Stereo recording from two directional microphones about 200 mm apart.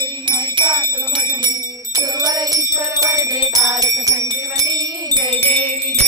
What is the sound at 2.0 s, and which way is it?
Music, 20° right (ahead or behind).